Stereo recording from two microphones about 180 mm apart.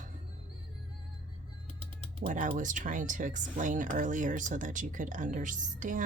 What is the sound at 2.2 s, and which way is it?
Speech, 45° right (ahead or behind).